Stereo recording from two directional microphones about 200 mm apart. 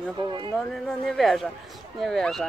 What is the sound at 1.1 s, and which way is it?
Speech, centre (ahead or behind).